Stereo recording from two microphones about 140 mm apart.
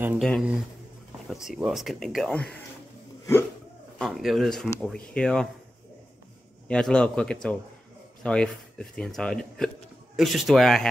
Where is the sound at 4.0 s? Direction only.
Centre (ahead or behind).